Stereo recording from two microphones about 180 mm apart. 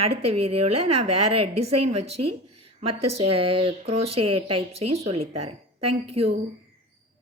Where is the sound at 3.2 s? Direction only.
30° right (ahead or behind).